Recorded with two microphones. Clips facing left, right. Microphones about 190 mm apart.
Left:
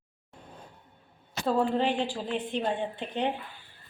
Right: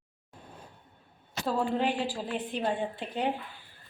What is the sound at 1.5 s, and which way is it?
A woman's voice, 5° right (ahead or behind).